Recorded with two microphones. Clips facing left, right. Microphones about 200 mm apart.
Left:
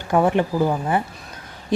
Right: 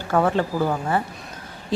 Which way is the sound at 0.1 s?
15° left (ahead or behind).